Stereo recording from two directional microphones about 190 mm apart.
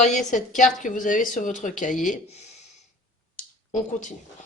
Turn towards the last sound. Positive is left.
turn(degrees=40)  # may be behind; listen again after turning